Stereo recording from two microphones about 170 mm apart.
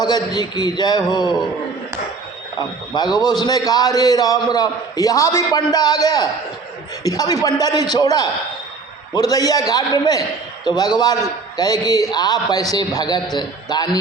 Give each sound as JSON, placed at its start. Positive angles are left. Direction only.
{"t": 0.0, "sound": "a man's voice", "side_deg": 25}
{"t": 2.6, "sound": "a man's voice", "side_deg": 25}